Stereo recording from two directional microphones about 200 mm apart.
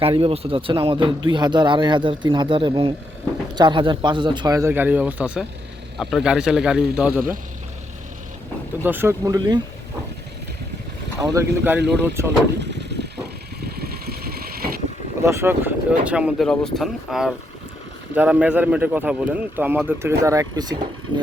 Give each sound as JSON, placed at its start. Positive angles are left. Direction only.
{"t": 0.0, "sound": "speech", "side_deg": -30}
{"t": 8.8, "sound": "speech", "side_deg": -10}
{"t": 11.2, "sound": "speech", "side_deg": -15}
{"t": 12.5, "sound": "vehicle", "side_deg": -60}
{"t": 15.2, "sound": "speech", "side_deg": -15}